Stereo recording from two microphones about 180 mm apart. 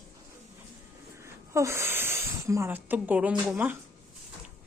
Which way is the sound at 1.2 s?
15° right (ahead or behind).